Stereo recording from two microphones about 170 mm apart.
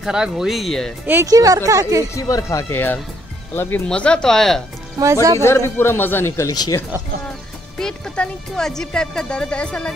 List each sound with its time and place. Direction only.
0.0 s speech: 5° right (ahead or behind)
1.0 s speech: 15° right (ahead or behind)
2.1 s a man's voice: 20° left (ahead or behind); by 4.6 s centre (ahead or behind)
5.4 s a man's voice: 15° left (ahead or behind)
7.8 s speech: 5° left (ahead or behind)